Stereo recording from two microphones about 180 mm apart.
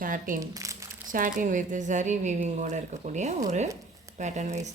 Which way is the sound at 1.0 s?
50° right (ahead or behind).